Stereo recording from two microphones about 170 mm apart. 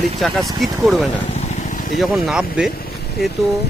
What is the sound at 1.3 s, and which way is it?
Vehicle, 40° left (ahead or behind).